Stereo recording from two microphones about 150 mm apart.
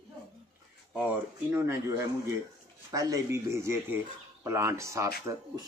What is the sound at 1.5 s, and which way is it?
Speech, 15° right (ahead or behind).